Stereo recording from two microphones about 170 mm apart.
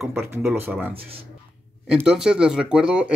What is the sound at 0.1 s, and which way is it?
Speech, 15° right (ahead or behind).